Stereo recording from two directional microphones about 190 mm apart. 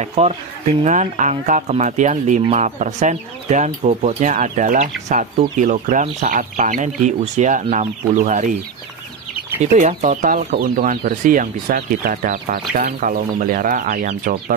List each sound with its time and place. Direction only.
0.0 s speech: 35° right (ahead or behind)
9.6 s speech: 35° right (ahead or behind)